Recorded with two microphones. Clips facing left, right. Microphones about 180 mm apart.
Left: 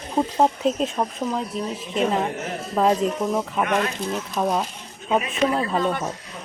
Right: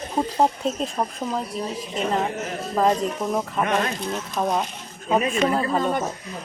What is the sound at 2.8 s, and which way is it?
Speech, centre (ahead or behind).